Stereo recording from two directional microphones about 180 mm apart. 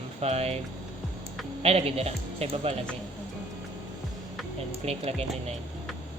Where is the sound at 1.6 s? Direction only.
35° right (ahead or behind).